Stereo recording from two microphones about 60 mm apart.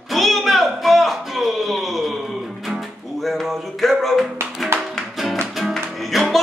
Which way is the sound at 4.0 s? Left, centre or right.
Centre.